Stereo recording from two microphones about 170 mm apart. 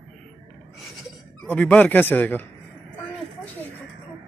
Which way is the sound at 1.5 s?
10° left (ahead or behind).